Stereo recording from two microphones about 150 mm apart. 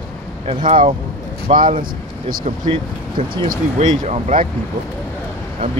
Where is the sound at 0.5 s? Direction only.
35° right (ahead or behind).